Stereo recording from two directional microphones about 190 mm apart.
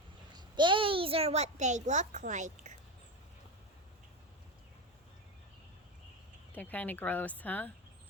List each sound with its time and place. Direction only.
0.3 s a child's voice: 25° right (ahead or behind); by 2.7 s 40° right (ahead or behind)
6.5 s speech: 10° left (ahead or behind)